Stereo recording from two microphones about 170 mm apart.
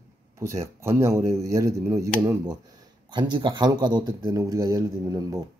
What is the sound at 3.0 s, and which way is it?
Speech, 25° right (ahead or behind).